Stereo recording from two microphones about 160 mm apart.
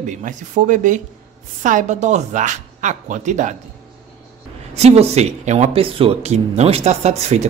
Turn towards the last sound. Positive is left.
turn(degrees=-45)  # may be behind; listen again after turning